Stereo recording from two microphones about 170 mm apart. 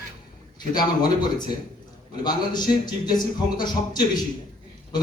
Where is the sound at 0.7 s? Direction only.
25° left (ahead or behind).